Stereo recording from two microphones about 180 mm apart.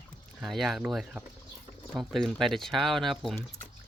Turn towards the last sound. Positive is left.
turn(degrees=0)  # may be behind; listen again after turning